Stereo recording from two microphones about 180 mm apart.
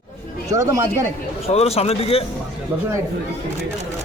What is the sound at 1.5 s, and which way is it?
Speech, 35° left (ahead or behind).